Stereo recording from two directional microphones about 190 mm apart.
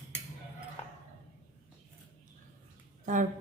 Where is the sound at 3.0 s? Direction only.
40° right (ahead or behind).